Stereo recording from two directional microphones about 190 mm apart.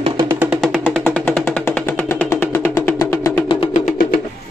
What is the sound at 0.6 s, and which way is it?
Music, centre (ahead or behind).